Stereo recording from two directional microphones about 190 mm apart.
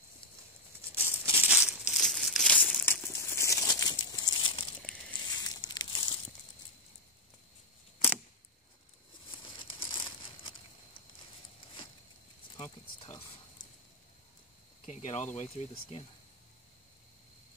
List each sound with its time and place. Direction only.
0.9 s crumpling: 10° right (ahead or behind); by 6.1 s 20° left (ahead or behind)
9.3 s crumpling: 25° left (ahead or behind)
12.5 s a sound: 30° left (ahead or behind)
14.9 s speech: 35° left (ahead or behind)